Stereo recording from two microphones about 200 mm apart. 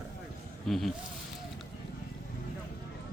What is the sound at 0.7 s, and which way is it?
Speech, centre (ahead or behind).